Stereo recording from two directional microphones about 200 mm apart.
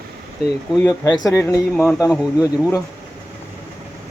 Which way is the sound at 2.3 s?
15° left (ahead or behind).